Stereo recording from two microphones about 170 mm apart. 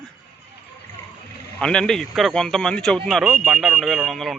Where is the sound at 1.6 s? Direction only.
5° left (ahead or behind).